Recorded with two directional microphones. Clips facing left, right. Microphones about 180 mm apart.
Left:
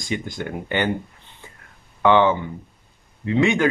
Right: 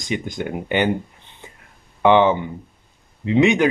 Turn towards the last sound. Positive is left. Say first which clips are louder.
# right 3 dB
turn(degrees=-20)  # may be behind; listen again after turning